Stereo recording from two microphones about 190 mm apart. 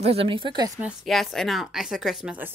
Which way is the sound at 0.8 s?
Centre (ahead or behind).